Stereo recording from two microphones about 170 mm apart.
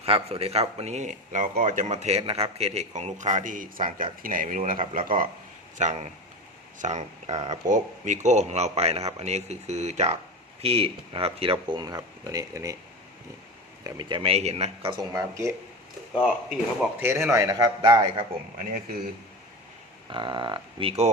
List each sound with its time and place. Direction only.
0.0 s speech: 35° right (ahead or behind); by 5.3 s 55° right (ahead or behind)
5.7 s speech: 45° right (ahead or behind); by 12.7 s 20° right (ahead or behind)
13.8 s speech: 20° right (ahead or behind)
14.2 s speech: 35° right (ahead or behind)
15.1 s speech: 15° right (ahead or behind)
16.1 s speech: 5° right (ahead or behind); by 18.3 s 25° right (ahead or behind)
20.1 s speech: 30° right (ahead or behind)